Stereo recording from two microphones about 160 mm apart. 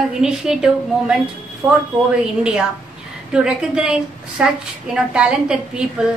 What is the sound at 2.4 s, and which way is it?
A woman's voice, 5° right (ahead or behind).